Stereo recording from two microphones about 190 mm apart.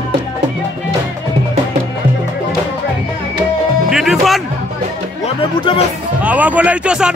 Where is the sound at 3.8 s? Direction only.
Centre (ahead or behind).